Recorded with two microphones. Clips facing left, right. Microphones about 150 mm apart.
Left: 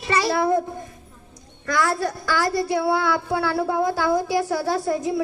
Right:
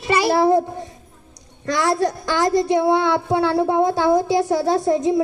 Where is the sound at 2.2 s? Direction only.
20° right (ahead or behind).